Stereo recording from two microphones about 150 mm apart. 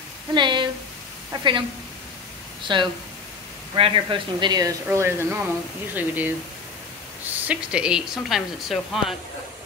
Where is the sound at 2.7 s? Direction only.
30° right (ahead or behind); by 9.2 s centre (ahead or behind).